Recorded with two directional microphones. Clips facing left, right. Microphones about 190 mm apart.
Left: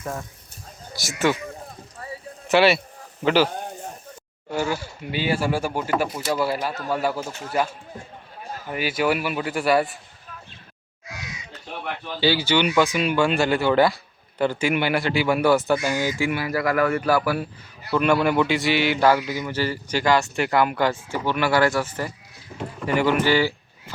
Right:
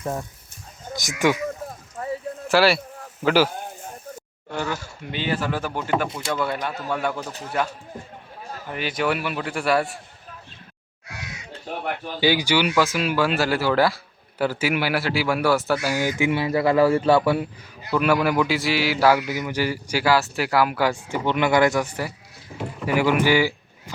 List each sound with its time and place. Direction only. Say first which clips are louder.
0.0 s speech: right 3 dB; 15° right (ahead or behind)
2.5 s speech: left 1 dB; centre (ahead or behind)
4.4 s speech: left 3 dB; 10° left (ahead or behind)
8.7 s speech: left 2 dB; 5° left (ahead or behind)
11.7 s a sound: right 4 dB; 45° right (ahead or behind)
12.2 s speech: even; 15° right (ahead or behind)
12.6 s speech: left 1 dB; centre (ahead or behind); by 17.9 s 20° right (ahead or behind)
17.9 s speech: left 1 dB; 5° right (ahead or behind)
21.1 s speech: right 1 dB; 20° right (ahead or behind)